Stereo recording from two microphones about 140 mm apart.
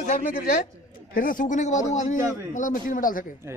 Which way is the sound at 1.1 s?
75° left (ahead or behind).